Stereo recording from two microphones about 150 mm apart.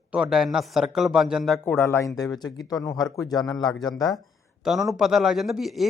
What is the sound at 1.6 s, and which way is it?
Speech, 15° left (ahead or behind).